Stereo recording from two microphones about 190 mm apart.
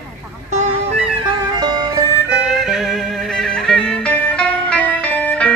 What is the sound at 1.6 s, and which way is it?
Music, 20° right (ahead or behind).